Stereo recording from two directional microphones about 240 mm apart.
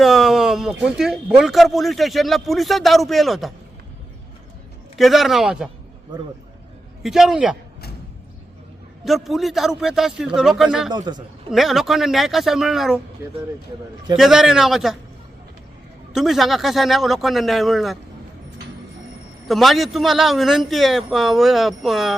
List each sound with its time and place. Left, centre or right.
0.0 s speech: centre
4.9 s speech: centre
7.0 s speech: centre
9.0 s speech: centre
10.9 s a man's voice: centre
11.5 s speech: centre
14.2 s speech: centre
16.1 s speech: centre
19.5 s speech: centre